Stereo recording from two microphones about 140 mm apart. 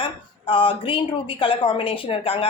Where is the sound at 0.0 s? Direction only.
40° left (ahead or behind).